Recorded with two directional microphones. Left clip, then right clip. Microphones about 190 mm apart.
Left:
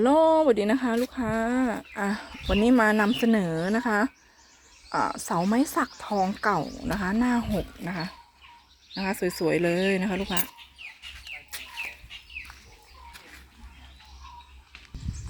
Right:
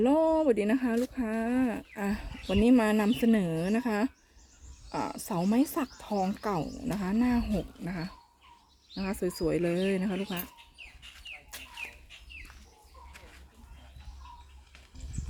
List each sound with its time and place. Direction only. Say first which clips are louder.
0.0 s speech: left 5 dB; centre (ahead or behind)
11.5 s chicken: left 6 dB; 45° left (ahead or behind)